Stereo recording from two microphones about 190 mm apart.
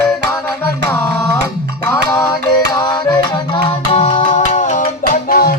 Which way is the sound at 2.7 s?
20° left (ahead or behind).